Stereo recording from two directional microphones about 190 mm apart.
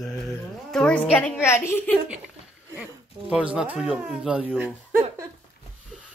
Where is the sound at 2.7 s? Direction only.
5° right (ahead or behind).